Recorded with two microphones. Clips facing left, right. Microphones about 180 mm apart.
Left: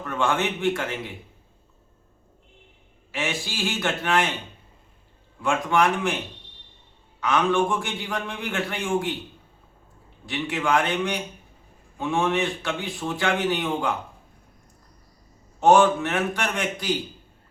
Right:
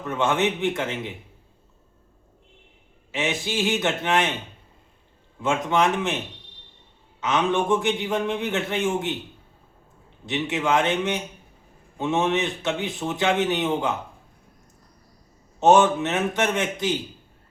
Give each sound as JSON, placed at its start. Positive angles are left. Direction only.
{"t": 0.0, "sound": "a man's voice", "side_deg": -20}
{"t": 3.1, "sound": "a man's voice", "side_deg": -20}
{"t": 5.4, "sound": "a man's voice", "side_deg": -20}
{"t": 7.2, "sound": "a man's voice", "side_deg": -20}
{"t": 10.2, "sound": "a man's voice", "side_deg": -20}
{"t": 15.6, "sound": "a man's voice", "side_deg": -20}